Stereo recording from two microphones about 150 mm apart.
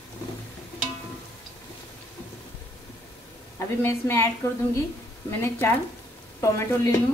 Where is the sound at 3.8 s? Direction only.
15° left (ahead or behind).